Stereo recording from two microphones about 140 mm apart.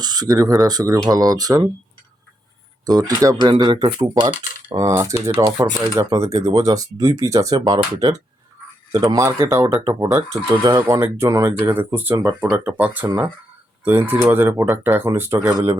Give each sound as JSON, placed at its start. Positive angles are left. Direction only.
{"t": 0.0, "sound": "speech", "side_deg": -30}
{"t": 2.8, "sound": "speech", "side_deg": -30}
{"t": 4.8, "sound": "speech", "side_deg": -25}